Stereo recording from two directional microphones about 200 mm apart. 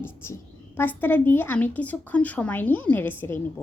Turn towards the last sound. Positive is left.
turn(degrees=10)  # may be behind; listen again after turning